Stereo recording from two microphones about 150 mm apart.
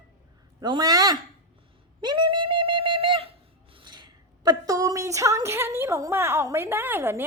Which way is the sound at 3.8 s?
30° right (ahead or behind).